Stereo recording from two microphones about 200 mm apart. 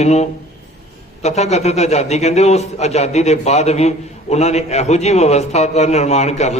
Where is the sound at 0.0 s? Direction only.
35° left (ahead or behind).